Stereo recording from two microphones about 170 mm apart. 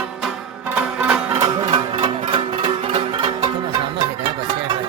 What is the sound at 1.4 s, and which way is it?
Music, 25° right (ahead or behind).